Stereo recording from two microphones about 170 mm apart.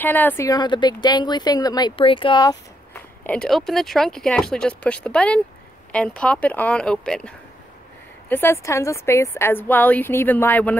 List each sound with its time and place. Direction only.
0.0 s speech: 10° left (ahead or behind); by 2.5 s 30° left (ahead or behind)
2.9 s a woman's voice: 5° left (ahead or behind)